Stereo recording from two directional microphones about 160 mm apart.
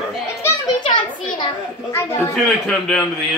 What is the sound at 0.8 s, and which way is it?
Speech, 30° left (ahead or behind).